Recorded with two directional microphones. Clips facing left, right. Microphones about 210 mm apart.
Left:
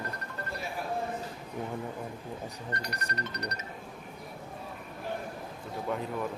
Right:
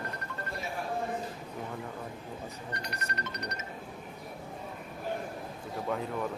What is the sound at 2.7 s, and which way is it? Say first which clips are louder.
Music: left 2 dB; 35° left (ahead or behind).